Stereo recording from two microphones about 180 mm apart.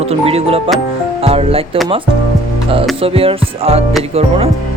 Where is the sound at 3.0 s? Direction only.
30° right (ahead or behind).